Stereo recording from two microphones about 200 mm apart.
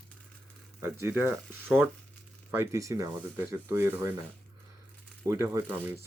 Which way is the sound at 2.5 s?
15° right (ahead or behind).